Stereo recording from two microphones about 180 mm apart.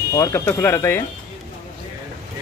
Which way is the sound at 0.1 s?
15° left (ahead or behind).